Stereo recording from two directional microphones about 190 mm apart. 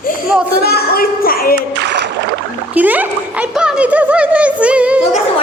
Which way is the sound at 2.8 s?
10° right (ahead or behind).